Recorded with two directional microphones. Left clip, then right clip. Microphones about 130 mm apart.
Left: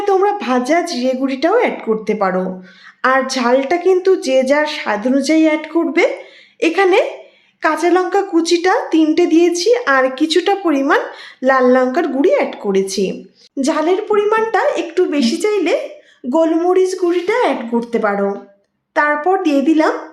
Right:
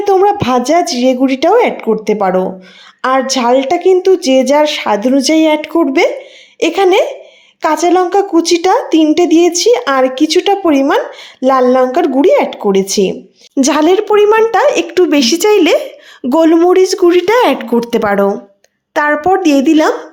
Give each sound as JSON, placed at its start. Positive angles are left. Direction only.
{"t": 0.0, "sound": "a woman's voice", "side_deg": -40}
{"t": 13.6, "sound": "speech", "side_deg": -90}
{"t": 18.9, "sound": "a woman's voice", "side_deg": -70}